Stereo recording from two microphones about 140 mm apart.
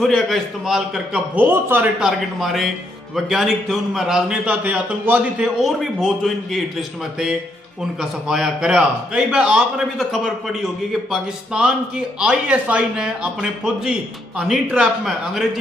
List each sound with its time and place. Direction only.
0.0 s a man's voice: centre (ahead or behind); by 1.9 s 15° right (ahead or behind)
2.0 s a man's voice: centre (ahead or behind)
8.0 s a man's voice: 5° right (ahead or behind)